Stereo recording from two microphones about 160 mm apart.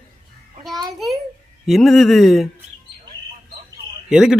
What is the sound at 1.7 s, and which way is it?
Speech, centre (ahead or behind).